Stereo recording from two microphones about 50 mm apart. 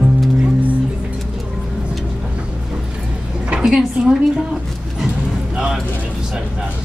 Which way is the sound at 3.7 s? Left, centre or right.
Centre.